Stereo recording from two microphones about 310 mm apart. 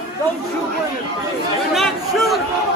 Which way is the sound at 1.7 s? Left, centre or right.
Centre.